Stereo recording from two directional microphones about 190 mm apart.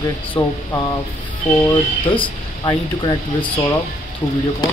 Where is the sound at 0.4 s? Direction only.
20° left (ahead or behind).